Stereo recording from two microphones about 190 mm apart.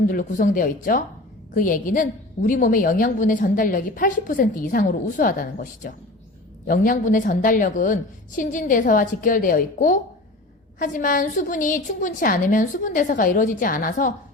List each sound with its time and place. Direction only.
0.1 s a woman's voice: 45° left (ahead or behind)